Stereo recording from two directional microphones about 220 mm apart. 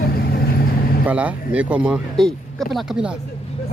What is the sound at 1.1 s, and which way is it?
Speech, 5° right (ahead or behind).